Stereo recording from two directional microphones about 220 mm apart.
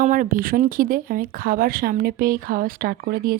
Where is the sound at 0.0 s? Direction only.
35° right (ahead or behind).